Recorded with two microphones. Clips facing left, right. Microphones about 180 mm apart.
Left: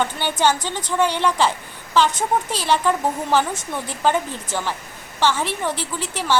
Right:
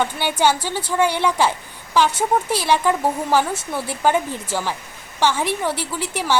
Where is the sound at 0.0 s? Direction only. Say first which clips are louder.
Right 1 dB; 10° right (ahead or behind).